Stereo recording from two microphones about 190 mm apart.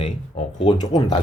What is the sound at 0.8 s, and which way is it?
Speech, 20° left (ahead or behind).